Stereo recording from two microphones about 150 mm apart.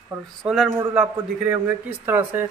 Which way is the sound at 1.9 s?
15° right (ahead or behind).